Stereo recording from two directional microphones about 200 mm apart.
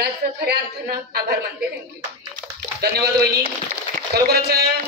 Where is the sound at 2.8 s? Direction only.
50° right (ahead or behind).